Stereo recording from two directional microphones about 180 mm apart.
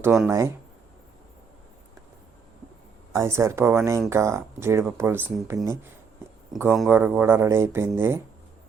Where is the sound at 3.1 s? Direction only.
15° right (ahead or behind).